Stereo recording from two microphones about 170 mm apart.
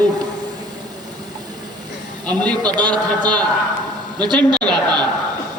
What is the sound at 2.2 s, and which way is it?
Speech, 5° left (ahead or behind).